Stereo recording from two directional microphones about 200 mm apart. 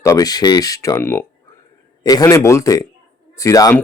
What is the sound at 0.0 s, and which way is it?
Speech, 15° left (ahead or behind).